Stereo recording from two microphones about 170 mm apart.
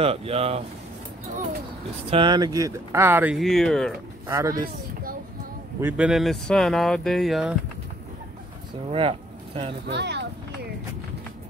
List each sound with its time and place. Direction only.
0.0 s speech: 35° right (ahead or behind)
2.0 s speech: 30° right (ahead or behind); by 3.3 s 10° right (ahead or behind)
3.3 s speech: centre (ahead or behind)
4.3 s speech: 20° right (ahead or behind)
5.8 s speech: 10° right (ahead or behind)
8.8 s speech: 35° right (ahead or behind)
9.8 s speech: 90° right